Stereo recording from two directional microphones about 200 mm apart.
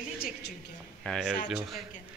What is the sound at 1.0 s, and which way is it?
Speech, centre (ahead or behind).